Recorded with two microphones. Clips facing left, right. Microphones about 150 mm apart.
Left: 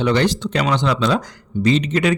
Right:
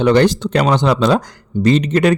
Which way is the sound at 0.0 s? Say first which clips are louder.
Right 5 dB; 50° right (ahead or behind).